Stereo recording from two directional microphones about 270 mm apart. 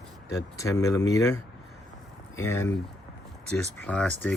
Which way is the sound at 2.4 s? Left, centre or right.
Centre.